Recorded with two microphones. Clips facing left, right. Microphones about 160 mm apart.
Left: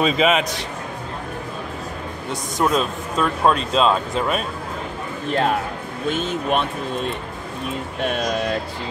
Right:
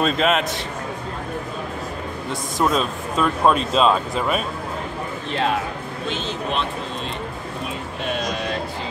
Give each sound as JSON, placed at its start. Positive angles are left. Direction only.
{"t": 0.0, "sound": "speech", "side_deg": 0}
{"t": 2.6, "sound": "speech", "side_deg": 0}
{"t": 6.0, "sound": "speech", "side_deg": 50}